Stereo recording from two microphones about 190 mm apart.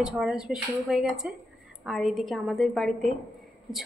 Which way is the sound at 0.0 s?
5° right (ahead or behind).